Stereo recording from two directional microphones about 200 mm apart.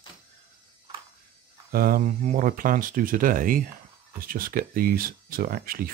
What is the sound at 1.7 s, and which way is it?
Speech, 50° right (ahead or behind).